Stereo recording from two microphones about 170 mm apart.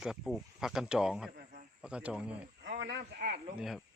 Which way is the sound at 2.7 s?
90° right.